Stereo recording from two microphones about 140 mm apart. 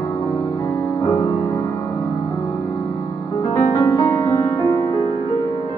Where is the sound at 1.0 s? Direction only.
30° left (ahead or behind).